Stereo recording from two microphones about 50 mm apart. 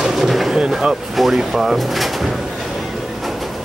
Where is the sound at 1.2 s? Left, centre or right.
Centre.